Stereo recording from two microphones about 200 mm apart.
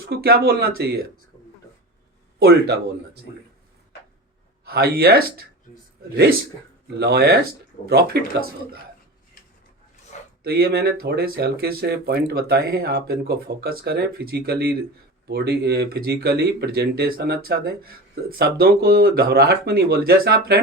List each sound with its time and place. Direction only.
0.1 s speech: 50° right (ahead or behind)
2.4 s speech: 50° right (ahead or behind)
4.6 s speech: 50° right (ahead or behind)
7.0 s speech: 55° right (ahead or behind)
10.4 s speech: 50° right (ahead or behind)